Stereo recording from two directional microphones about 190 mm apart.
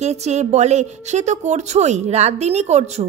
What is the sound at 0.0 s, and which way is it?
A woman's voice, 35° right (ahead or behind).